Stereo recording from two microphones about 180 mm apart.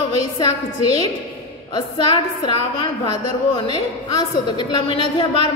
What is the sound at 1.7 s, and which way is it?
A woman's voice, 30° left (ahead or behind).